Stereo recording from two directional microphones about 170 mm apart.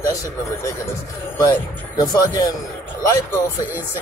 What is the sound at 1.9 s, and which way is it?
Speech, 20° left (ahead or behind).